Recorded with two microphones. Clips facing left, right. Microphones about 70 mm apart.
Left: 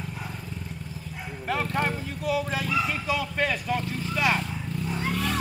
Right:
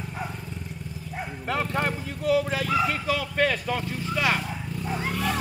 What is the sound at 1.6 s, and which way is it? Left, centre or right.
Vehicle, centre.